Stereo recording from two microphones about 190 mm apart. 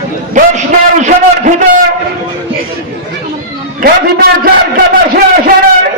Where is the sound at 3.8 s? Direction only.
50° right (ahead or behind).